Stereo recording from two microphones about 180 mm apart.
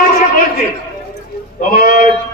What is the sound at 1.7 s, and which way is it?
Speech, 50° left (ahead or behind).